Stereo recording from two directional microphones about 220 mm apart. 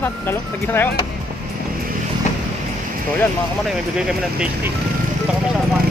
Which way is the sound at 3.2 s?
Centre (ahead or behind).